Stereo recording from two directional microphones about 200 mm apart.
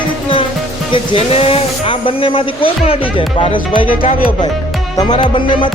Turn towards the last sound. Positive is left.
turn(degrees=25)  # may be behind; listen again after turning